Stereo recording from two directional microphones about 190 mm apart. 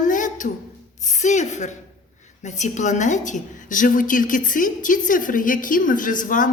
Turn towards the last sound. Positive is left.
turn(degrees=45)  # may be behind; listen again after turning